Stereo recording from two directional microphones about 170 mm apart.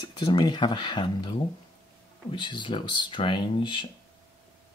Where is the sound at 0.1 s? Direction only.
25° left (ahead or behind).